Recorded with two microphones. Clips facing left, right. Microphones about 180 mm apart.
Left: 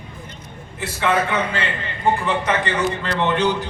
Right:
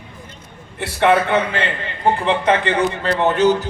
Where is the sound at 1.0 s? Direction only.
60° right (ahead or behind).